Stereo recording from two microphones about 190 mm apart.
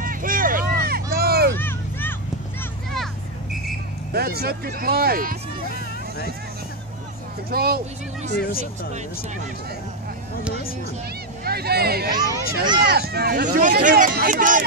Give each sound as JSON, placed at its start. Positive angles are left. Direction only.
{"t": 0.0, "sound": "vehicle", "side_deg": -45}
{"t": 1.1, "sound": "a sound", "side_deg": -55}
{"t": 1.5, "sound": "vehicle", "side_deg": 10}
{"t": 4.1, "sound": "speech", "side_deg": -55}
{"t": 7.5, "sound": "speech", "side_deg": -55}
{"t": 8.4, "sound": "speech", "side_deg": 50}
{"t": 11.4, "sound": "speech", "side_deg": -55}
{"t": 12.1, "sound": "speech", "side_deg": -25}
{"t": 12.9, "sound": "speech", "side_deg": -55}